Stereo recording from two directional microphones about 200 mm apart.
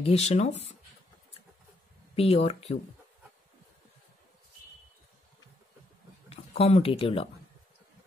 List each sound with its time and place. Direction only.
0.0 s speech: 30° left (ahead or behind)
2.1 s speech: 30° left (ahead or behind)
6.2 s speech: 30° left (ahead or behind)